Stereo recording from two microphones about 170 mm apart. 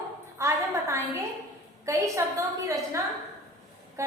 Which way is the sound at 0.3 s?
15° right (ahead or behind).